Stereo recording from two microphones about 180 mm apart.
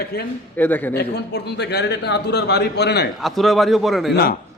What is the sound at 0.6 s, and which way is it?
Speech, 10° left (ahead or behind).